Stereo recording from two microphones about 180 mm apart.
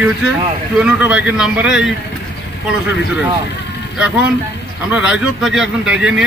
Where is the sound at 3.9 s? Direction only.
5° right (ahead or behind).